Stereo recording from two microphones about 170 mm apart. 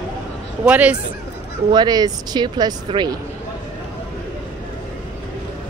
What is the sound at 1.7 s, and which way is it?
Speech, 25° right (ahead or behind).